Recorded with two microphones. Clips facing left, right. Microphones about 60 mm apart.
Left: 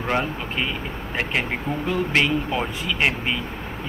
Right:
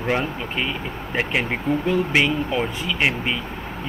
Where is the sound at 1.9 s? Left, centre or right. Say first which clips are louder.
Even; centre.